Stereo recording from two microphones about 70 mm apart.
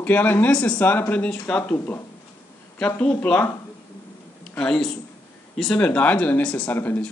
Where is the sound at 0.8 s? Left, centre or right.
Left.